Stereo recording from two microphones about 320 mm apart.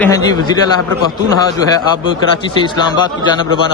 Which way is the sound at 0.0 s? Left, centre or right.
Centre.